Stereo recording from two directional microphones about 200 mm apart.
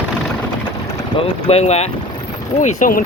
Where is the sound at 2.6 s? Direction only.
40° left (ahead or behind).